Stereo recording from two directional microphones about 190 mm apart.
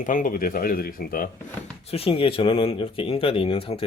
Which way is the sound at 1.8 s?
30° left (ahead or behind).